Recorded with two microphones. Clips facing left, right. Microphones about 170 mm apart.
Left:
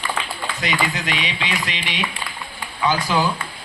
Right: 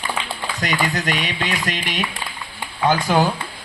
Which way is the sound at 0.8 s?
45° right (ahead or behind).